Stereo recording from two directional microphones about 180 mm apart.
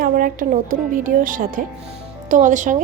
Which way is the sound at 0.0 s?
50° right (ahead or behind).